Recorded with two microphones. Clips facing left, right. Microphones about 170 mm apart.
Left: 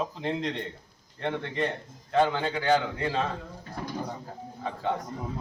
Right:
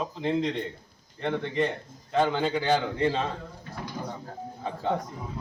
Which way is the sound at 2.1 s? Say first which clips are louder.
Even; 15° right (ahead or behind).